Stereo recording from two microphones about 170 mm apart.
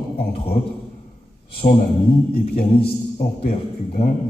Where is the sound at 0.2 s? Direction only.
35° left (ahead or behind).